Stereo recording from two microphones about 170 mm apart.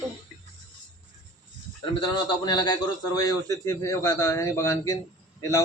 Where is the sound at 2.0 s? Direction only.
25° left (ahead or behind).